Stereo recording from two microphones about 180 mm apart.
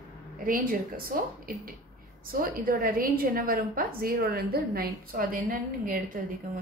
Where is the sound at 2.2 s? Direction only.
55° right (ahead or behind).